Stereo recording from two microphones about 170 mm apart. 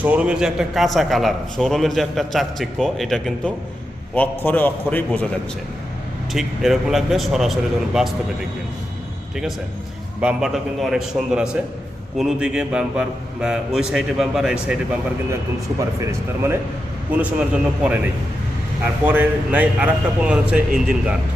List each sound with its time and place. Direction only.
0.0 s a man's voice: 10° right (ahead or behind); by 5.3 s 10° left (ahead or behind)
6.3 s a man's voice: centre (ahead or behind)
10.2 s a man's voice: 5° right (ahead or behind)
15.8 s a man's voice: 15° right (ahead or behind)